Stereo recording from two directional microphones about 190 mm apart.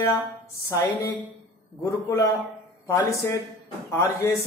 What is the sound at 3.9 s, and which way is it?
Speech, 15° left (ahead or behind).